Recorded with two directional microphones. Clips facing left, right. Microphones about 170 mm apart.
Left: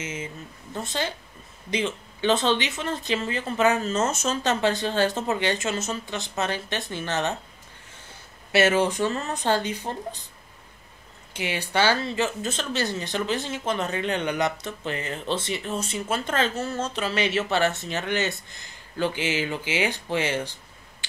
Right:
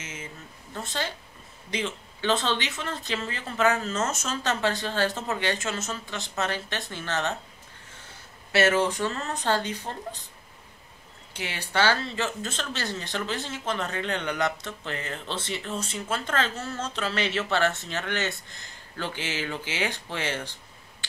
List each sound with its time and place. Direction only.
0.0 s a sound: 20° left (ahead or behind)
0.7 s speech: 20° left (ahead or behind)
8.5 s speech: 15° left (ahead or behind)
11.3 s speech: 15° left (ahead or behind)